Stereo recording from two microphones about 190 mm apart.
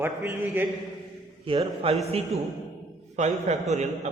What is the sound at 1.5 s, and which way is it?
A man's voice, 30° right (ahead or behind).